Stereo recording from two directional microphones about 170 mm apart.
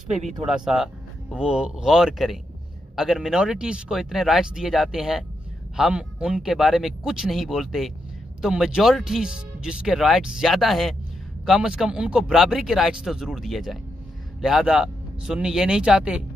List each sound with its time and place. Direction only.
0.5 s speech: 5° right (ahead or behind)